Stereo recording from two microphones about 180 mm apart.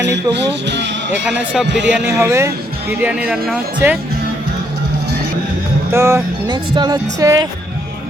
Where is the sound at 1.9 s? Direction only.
10° right (ahead or behind).